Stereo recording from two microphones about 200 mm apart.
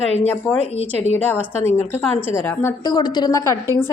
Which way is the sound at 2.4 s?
10° left (ahead or behind).